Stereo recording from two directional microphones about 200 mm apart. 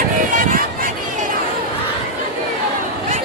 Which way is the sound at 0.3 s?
45° right (ahead or behind).